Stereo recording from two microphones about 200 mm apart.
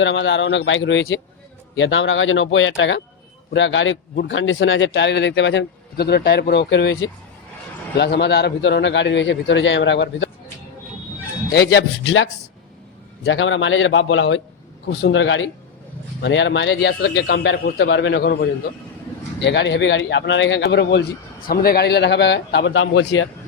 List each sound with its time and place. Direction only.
0.0 s a man's voice: 70° left (ahead or behind)
11.5 s a man's voice: 60° left (ahead or behind)